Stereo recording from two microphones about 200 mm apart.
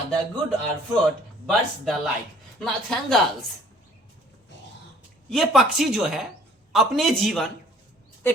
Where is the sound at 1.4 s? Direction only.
Centre (ahead or behind).